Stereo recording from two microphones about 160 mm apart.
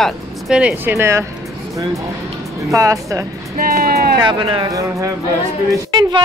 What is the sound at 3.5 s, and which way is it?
Speech, 65° right (ahead or behind).